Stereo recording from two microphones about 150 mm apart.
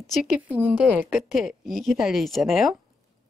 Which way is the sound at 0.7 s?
Centre (ahead or behind).